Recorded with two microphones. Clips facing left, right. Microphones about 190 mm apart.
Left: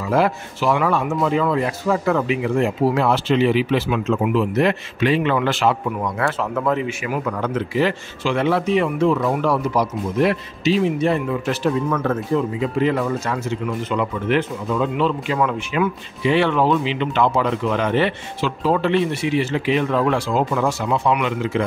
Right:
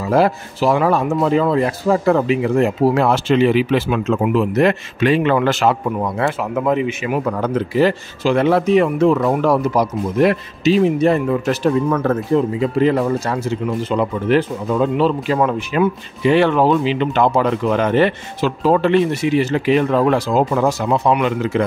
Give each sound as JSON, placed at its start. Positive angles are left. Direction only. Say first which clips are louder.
{"t": 0.1, "sound": "speech", "louder": "right 3 dB", "side_deg": -35}
{"t": 5.9, "sound": "speech", "louder": "right 3 dB", "side_deg": -30}
{"t": 7.2, "sound": "speech", "louder": "right 4 dB", "side_deg": -40}